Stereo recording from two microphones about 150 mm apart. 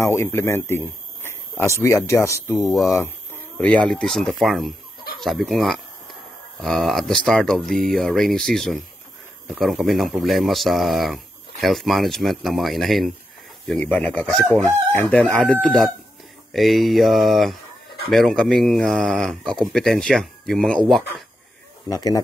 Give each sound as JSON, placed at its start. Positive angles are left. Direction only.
{"t": 0.0, "sound": "speech", "side_deg": 20}
{"t": 2.6, "sound": "speech", "side_deg": 0}
{"t": 3.0, "sound": "speech", "side_deg": 10}
{"t": 21.8, "sound": "speech", "side_deg": 25}